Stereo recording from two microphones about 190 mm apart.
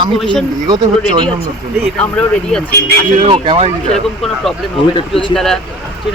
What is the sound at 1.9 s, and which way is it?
Speech, 5° left (ahead or behind).